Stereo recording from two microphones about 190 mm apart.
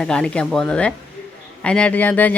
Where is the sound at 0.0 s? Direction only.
5° left (ahead or behind).